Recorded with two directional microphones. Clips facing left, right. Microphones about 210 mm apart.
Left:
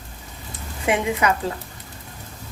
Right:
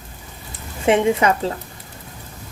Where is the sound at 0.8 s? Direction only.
30° right (ahead or behind).